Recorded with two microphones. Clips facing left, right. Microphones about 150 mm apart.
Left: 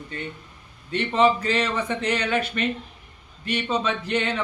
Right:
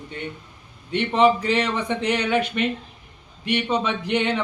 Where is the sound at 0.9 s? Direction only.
15° right (ahead or behind).